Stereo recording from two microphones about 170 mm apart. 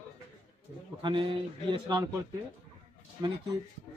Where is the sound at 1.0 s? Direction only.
30° right (ahead or behind).